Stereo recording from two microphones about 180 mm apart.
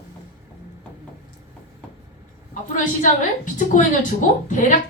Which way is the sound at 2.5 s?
45° left (ahead or behind).